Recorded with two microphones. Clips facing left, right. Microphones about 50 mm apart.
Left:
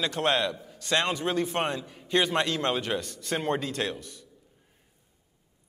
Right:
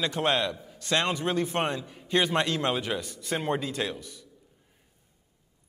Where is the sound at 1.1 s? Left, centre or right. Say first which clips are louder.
Even; right; by 4.0 s centre.